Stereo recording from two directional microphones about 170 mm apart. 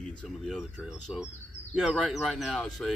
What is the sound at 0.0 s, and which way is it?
Speech, 5° left (ahead or behind).